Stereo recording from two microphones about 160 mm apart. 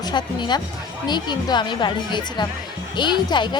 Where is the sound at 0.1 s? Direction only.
25° left (ahead or behind).